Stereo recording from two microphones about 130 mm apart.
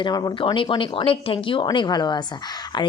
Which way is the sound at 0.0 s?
30° left (ahead or behind).